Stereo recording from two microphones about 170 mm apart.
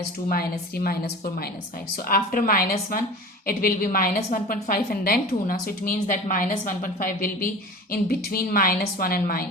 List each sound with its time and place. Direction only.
0.3 s a woman's voice: 60° left (ahead or behind)